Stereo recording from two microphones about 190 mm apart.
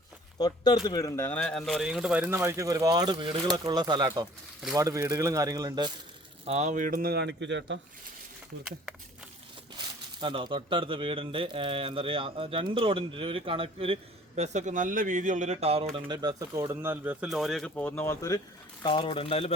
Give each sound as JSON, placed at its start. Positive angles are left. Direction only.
{"t": 0.3, "sound": "speech", "side_deg": 20}
{"t": 6.4, "sound": "speech", "side_deg": -35}
{"t": 9.7, "sound": "speech", "side_deg": -25}
{"t": 18.8, "sound": "speech", "side_deg": 25}